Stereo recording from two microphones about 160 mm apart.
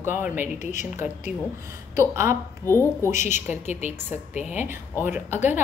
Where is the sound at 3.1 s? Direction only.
50° left (ahead or behind).